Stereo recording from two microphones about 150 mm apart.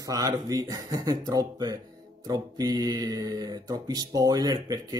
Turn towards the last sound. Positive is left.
turn(degrees=-25)  # may be behind; listen again after turning